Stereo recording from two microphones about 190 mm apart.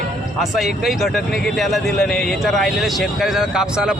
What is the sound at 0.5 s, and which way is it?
Speech, centre (ahead or behind).